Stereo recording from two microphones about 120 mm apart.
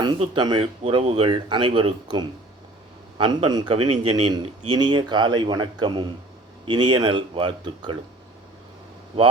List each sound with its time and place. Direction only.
0.3 s speech: 40° right (ahead or behind)
0.6 s speech: 50° right (ahead or behind)
3.7 s speech: 50° right (ahead or behind)
4.1 s speech: 40° right (ahead or behind)